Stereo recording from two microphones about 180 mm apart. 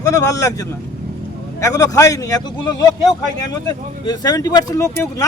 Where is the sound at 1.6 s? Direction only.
20° left (ahead or behind).